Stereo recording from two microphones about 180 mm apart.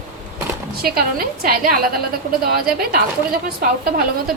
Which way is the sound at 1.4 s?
55° right (ahead or behind).